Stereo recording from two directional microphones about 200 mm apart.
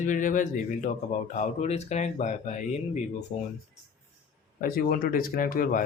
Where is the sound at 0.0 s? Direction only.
40° left (ahead or behind).